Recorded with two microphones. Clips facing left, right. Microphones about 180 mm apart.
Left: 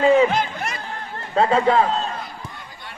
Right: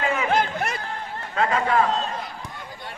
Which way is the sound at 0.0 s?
30° left (ahead or behind).